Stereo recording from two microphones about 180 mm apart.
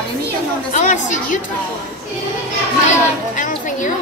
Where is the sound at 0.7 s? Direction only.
40° left (ahead or behind).